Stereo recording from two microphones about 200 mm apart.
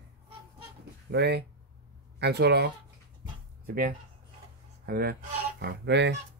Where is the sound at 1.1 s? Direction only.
55° right (ahead or behind).